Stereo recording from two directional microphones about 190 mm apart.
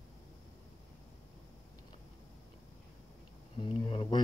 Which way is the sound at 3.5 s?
25° left (ahead or behind).